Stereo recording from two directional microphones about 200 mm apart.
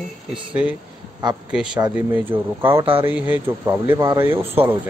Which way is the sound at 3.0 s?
10° right (ahead or behind).